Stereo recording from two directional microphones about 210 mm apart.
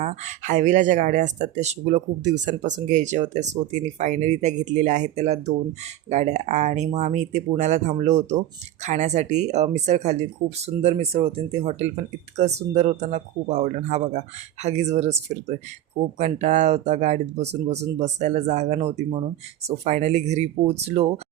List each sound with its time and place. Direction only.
0.0 s speech: 35° right (ahead or behind)